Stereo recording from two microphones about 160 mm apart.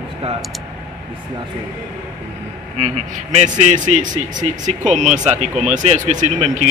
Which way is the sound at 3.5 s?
50° right (ahead or behind).